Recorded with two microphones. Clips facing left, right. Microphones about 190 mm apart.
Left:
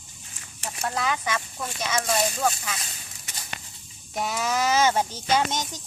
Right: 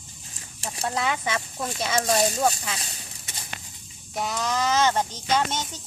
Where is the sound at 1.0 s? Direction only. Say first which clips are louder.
Even; 25° right (ahead or behind).